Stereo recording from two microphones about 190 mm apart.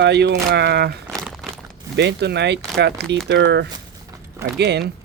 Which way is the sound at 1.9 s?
60° right (ahead or behind).